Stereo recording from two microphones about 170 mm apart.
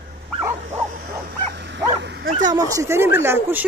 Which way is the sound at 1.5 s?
90° right.